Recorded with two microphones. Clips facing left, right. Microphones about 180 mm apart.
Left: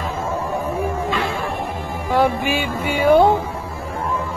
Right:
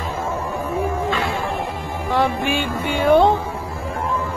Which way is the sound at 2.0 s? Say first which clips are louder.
Left 2 dB; 10° left (ahead or behind).